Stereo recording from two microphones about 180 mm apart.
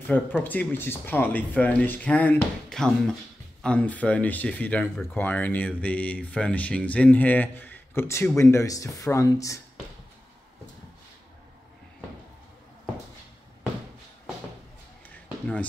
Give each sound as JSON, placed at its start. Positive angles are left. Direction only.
{"t": 0.0, "sound": "speech", "side_deg": 10}